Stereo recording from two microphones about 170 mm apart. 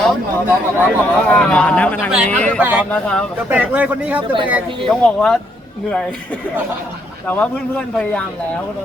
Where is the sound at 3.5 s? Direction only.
10° right (ahead or behind).